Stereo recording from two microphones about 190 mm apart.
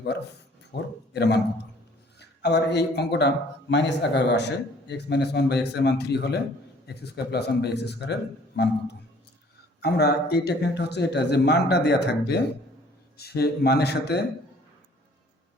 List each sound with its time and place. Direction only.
0.7 s a man's voice: 65° left (ahead or behind)